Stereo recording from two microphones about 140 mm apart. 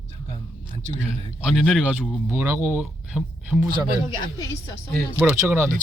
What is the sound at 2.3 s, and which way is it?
Speech, 15° right (ahead or behind).